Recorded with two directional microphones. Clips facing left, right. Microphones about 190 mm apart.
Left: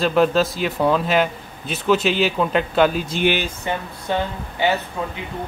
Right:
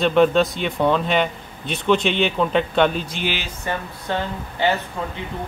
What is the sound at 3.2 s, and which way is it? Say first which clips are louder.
Speech: left 9 dB; 50° left (ahead or behind).